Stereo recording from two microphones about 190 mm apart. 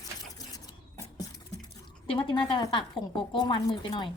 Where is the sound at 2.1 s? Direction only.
25° left (ahead or behind).